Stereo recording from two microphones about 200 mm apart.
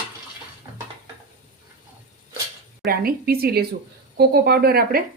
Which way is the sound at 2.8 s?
50° right (ahead or behind).